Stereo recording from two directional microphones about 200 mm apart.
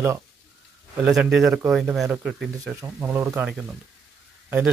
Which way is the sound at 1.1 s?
Centre (ahead or behind).